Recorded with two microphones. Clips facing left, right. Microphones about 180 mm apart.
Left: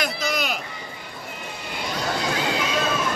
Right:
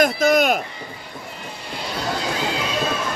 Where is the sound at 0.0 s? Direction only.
50° right (ahead or behind).